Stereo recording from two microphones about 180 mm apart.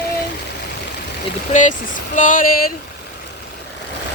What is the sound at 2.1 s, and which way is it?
Speech, 45° left (ahead or behind).